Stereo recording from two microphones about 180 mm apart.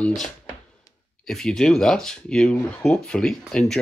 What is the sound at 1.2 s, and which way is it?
Speech, centre (ahead or behind).